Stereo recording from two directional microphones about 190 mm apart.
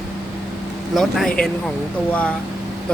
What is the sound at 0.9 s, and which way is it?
Speech, centre (ahead or behind).